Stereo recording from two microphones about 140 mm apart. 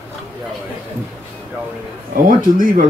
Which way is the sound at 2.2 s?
70° right (ahead or behind).